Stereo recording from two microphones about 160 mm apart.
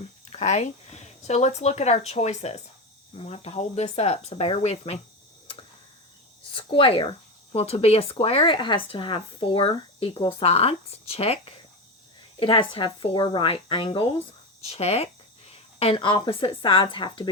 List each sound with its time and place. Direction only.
0.3 s speech: 45° left (ahead or behind)
6.5 s speech: 35° left (ahead or behind)
12.4 s speech: 30° left (ahead or behind)